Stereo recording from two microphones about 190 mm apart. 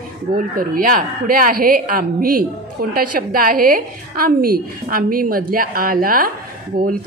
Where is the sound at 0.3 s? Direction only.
50° right (ahead or behind).